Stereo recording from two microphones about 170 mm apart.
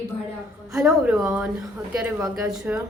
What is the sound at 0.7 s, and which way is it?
A woman's voice, 5° right (ahead or behind).